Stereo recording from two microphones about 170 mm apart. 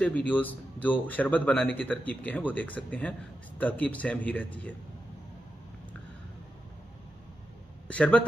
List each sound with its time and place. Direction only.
0.0 s speech: 10° left (ahead or behind)
7.9 s speech: 5° left (ahead or behind)